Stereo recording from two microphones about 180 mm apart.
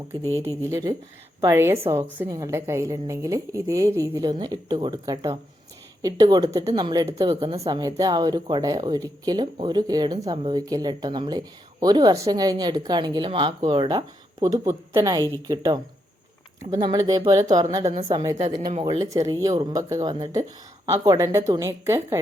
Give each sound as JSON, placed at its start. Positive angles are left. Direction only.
{"t": 0.2, "sound": "speech", "side_deg": 15}
{"t": 0.6, "sound": "a woman's voice", "side_deg": -20}